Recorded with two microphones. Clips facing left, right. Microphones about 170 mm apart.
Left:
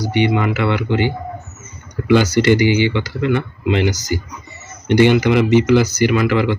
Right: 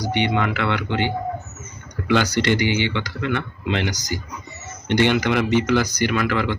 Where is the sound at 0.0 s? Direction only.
10° left (ahead or behind).